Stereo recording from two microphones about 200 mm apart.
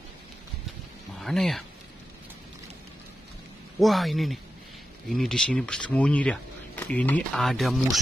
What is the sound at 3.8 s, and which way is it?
Speech, centre (ahead or behind).